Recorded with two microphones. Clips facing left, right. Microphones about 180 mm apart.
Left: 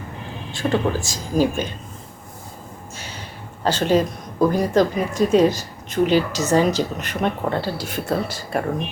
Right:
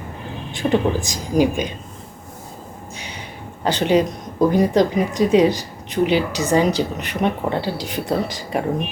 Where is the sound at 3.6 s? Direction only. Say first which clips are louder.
Right 1 dB; 15° right (ahead or behind).